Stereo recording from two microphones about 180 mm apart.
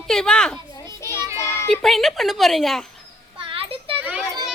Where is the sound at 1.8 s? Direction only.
Centre (ahead or behind).